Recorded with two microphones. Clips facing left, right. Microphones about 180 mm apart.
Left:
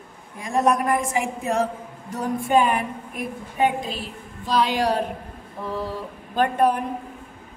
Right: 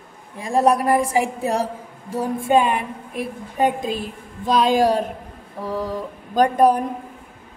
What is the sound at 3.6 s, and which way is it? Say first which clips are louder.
A woman's voice: right 2 dB; 50° right (ahead or behind).